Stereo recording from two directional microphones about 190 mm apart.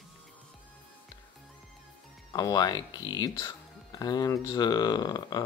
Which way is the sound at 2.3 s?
20° left (ahead or behind).